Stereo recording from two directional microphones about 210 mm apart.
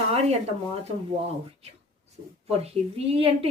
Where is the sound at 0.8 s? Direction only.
30° right (ahead or behind).